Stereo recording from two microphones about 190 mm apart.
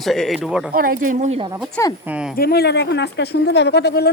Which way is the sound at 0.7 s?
50° right (ahead or behind).